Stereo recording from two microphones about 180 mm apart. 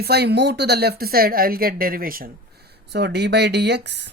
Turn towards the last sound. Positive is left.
turn(degrees=-70)  # may be behind; listen again after turning